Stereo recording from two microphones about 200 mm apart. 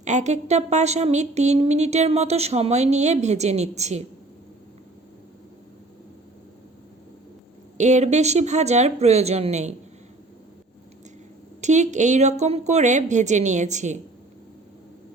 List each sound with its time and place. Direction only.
0.0 s speech: 35° right (ahead or behind)
7.8 s speech: 35° right (ahead or behind)
11.6 s speech: 35° right (ahead or behind)